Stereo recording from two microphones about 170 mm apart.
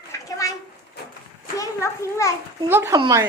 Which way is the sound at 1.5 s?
20° left (ahead or behind).